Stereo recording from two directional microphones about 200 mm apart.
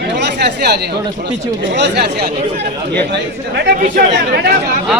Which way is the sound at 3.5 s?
45° right (ahead or behind).